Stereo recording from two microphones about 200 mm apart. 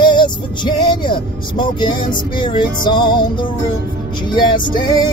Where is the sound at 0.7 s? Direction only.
20° left (ahead or behind).